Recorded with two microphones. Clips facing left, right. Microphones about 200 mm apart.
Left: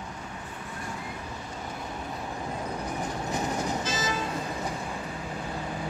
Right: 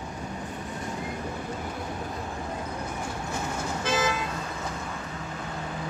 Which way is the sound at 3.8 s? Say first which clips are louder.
Right 4 dB; 60° right (ahead or behind).